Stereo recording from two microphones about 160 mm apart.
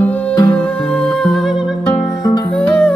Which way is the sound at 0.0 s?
10° left (ahead or behind).